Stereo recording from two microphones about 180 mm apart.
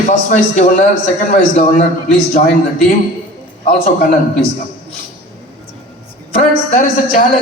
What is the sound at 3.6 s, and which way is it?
Speech, 50° left (ahead or behind).